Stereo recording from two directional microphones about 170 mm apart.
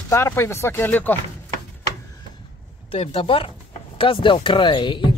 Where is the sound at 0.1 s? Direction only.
15° left (ahead or behind).